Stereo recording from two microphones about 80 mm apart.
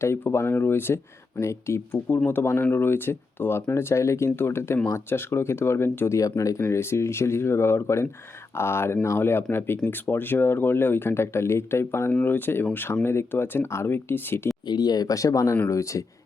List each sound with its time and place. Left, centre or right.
0.0 s speech: left
14.7 s speech: left